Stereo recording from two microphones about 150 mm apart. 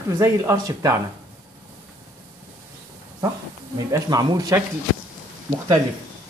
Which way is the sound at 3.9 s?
25° right (ahead or behind).